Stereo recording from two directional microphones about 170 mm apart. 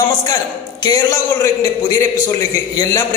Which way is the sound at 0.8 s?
20° left (ahead or behind).